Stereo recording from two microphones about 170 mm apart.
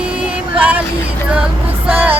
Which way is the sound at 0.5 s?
10° right (ahead or behind).